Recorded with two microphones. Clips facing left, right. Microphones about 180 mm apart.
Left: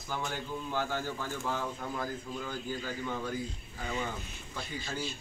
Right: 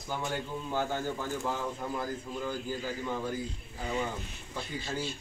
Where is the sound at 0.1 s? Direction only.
20° right (ahead or behind).